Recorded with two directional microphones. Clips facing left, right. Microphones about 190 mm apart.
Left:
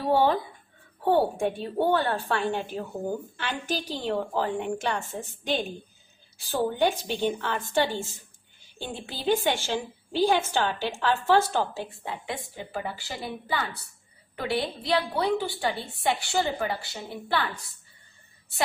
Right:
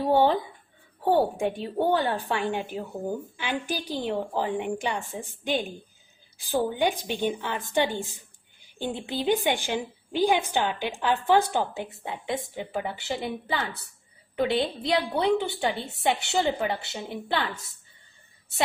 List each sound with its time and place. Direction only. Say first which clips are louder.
1.0 s a woman's voice: even; 10° right (ahead or behind)